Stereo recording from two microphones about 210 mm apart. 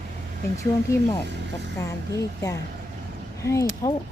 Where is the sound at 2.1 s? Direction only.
15° left (ahead or behind).